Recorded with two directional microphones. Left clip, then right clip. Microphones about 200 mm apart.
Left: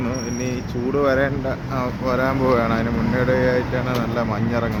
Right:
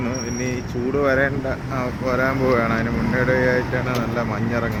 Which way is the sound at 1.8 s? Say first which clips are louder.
Even; 15° left (ahead or behind).